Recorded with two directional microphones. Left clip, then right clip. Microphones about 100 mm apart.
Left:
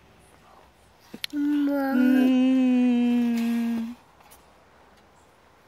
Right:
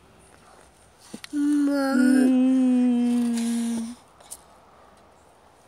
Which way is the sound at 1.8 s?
25° left (ahead or behind).